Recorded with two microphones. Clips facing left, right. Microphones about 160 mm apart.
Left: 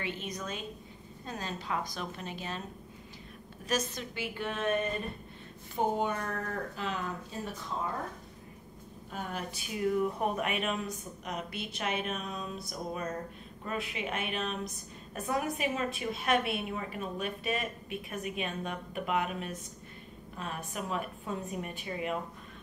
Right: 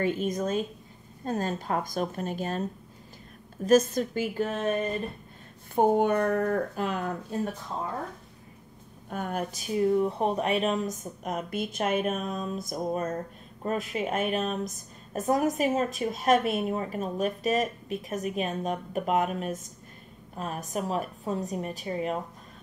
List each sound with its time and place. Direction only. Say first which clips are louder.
0.0 s speech: right 11 dB; 45° right (ahead or behind)
3.6 s speech: right 12 dB; 45° right (ahead or behind)
5.8 s speech: right 8 dB; 55° right (ahead or behind)
9.1 s a woman's voice: right 7 dB; 50° right (ahead or behind)